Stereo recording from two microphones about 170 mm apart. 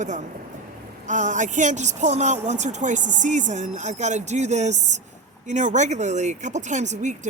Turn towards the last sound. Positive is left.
turn(degrees=-45)  # may be behind; listen again after turning